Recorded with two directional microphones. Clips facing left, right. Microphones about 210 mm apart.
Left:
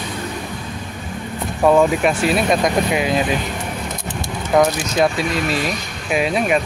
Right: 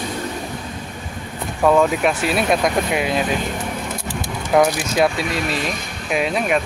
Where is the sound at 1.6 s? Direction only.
10° left (ahead or behind).